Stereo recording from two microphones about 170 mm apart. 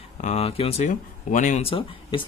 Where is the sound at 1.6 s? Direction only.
30° left (ahead or behind).